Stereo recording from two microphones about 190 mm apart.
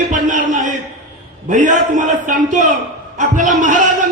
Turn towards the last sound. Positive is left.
turn(degrees=-40)  # may be behind; listen again after turning